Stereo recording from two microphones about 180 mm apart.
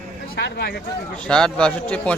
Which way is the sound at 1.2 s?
5° left (ahead or behind).